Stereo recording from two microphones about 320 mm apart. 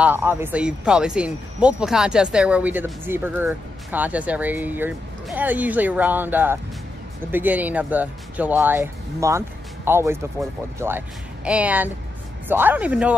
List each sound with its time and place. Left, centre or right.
0.0 s speech: centre